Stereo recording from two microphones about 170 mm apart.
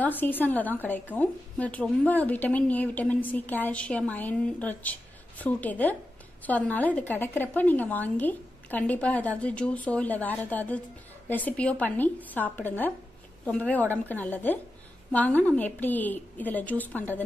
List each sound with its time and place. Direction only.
0.0 s a woman's voice: 10° left (ahead or behind)